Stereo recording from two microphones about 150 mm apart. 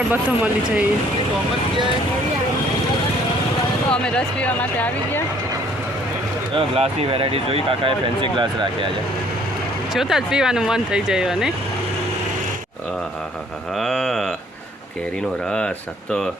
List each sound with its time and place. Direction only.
0.1 s speech: 10° right (ahead or behind)
3.9 s speech: 5° left (ahead or behind)
6.5 s speech: 40° right (ahead or behind)
9.9 s speech: centre (ahead or behind)
13.7 s a sound: centre (ahead or behind)
15.4 s speech: 5° left (ahead or behind)